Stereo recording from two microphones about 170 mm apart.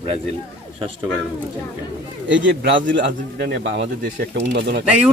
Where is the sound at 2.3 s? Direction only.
90° right.